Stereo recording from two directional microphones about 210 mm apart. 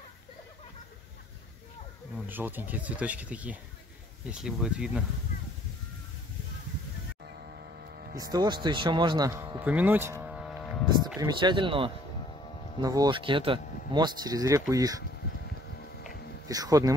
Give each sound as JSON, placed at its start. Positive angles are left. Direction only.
{"t": 2.1, "sound": "speech", "side_deg": -10}
{"t": 8.2, "sound": "speech", "side_deg": -20}
{"t": 11.1, "sound": "speech", "side_deg": -20}
{"t": 16.4, "sound": "speech", "side_deg": -15}